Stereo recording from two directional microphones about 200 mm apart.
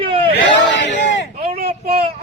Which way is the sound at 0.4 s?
60° left (ahead or behind).